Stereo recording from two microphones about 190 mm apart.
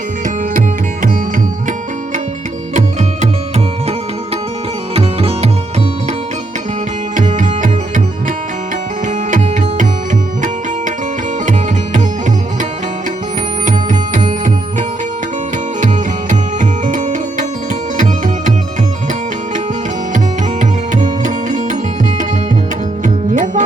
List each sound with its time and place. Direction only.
4.9 s music: 30° right (ahead or behind)
7.2 s tabla: 40° right (ahead or behind)
9.3 s music: 45° right (ahead or behind)
13.7 s music: 40° right (ahead or behind)
16.3 s music: 40° right (ahead or behind)
17.9 s tabla: 40° right (ahead or behind)
20.1 s music: 40° right (ahead or behind)
23.0 s music: 40° right (ahead or behind)